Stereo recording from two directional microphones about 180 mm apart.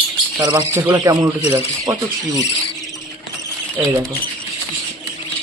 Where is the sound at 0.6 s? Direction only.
10° right (ahead or behind).